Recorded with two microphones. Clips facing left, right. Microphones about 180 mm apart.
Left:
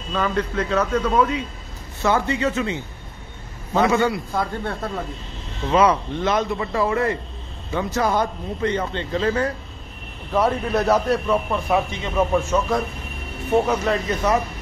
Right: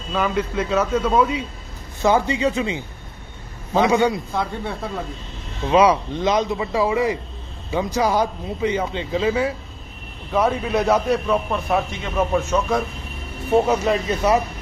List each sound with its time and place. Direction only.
0.1 s speech: 10° right (ahead or behind)
4.3 s a man's voice: centre (ahead or behind)
5.7 s a man's voice: 15° right (ahead or behind); by 12.8 s centre (ahead or behind)
13.7 s speech: 10° right (ahead or behind)